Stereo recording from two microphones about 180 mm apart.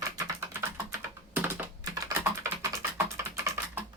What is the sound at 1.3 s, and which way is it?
Typing, 10° right (ahead or behind).